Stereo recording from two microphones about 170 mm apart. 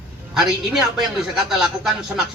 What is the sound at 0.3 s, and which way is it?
A man's voice, 5° right (ahead or behind).